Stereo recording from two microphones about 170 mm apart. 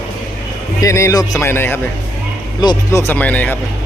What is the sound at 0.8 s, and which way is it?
Speech, 15° left (ahead or behind).